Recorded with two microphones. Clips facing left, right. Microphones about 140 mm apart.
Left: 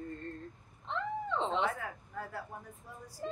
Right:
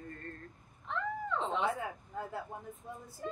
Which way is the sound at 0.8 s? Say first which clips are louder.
Left 1 dB; 25° left (ahead or behind).